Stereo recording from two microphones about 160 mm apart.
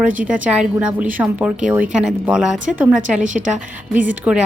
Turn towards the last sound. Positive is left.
turn(degrees=-10)  # may be behind; listen again after turning